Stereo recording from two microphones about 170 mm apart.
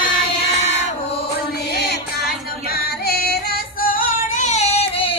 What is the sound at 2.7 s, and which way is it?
Music, 65° left (ahead or behind).